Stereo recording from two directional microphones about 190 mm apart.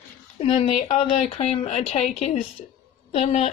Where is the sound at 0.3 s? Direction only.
30° left (ahead or behind).